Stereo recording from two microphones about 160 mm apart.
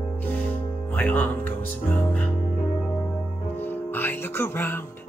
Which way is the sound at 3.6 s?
10° left (ahead or behind).